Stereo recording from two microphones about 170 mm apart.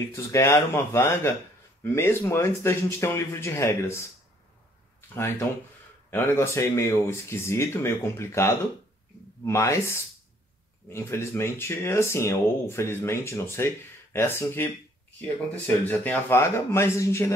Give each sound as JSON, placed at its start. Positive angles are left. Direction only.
{"t": 0.1, "sound": "speech", "side_deg": 15}
{"t": 6.0, "sound": "speech", "side_deg": 15}